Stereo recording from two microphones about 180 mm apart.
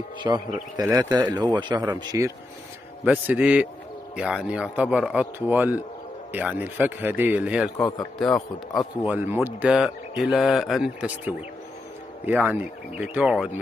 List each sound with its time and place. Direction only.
0.2 s a man's voice: 25° right (ahead or behind); by 13.5 s 5° right (ahead or behind)